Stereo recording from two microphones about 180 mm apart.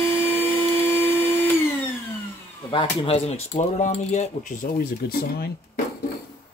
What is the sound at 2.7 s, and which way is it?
Speech, 30° left (ahead or behind).